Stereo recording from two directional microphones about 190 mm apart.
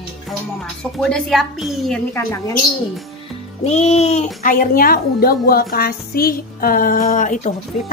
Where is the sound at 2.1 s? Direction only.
15° left (ahead or behind).